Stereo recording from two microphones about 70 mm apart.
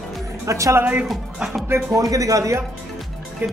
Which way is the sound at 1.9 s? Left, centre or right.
Right.